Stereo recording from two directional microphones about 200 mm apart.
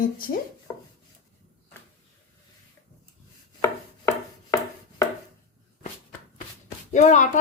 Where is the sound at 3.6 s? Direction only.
15° left (ahead or behind).